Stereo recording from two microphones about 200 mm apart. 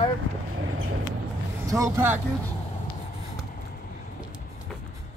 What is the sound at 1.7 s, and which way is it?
Speech, 15° right (ahead or behind).